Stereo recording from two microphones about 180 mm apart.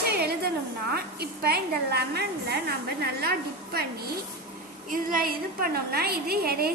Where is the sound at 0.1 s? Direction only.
60° right (ahead or behind).